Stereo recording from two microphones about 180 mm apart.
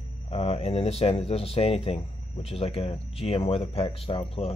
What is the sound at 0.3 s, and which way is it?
Speech, 35° left (ahead or behind).